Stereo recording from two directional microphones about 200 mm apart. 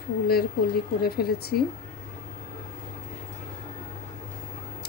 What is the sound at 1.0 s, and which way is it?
Speech, 50° left (ahead or behind).